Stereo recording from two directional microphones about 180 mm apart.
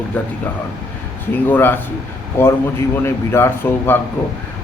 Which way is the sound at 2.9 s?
15° left (ahead or behind).